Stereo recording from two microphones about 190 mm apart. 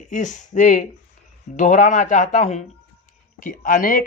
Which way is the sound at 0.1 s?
40° left (ahead or behind).